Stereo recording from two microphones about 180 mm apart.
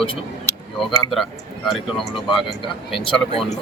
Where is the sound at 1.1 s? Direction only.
Centre (ahead or behind).